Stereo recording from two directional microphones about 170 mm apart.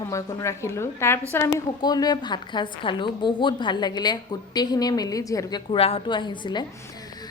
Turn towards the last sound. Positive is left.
turn(degrees=25)  # may be behind; listen again after turning